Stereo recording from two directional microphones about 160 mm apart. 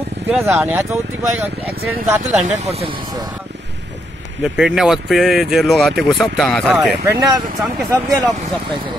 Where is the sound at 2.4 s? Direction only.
45° right (ahead or behind).